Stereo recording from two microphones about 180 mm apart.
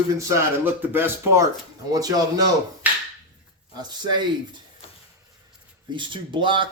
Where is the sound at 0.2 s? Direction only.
15° right (ahead or behind).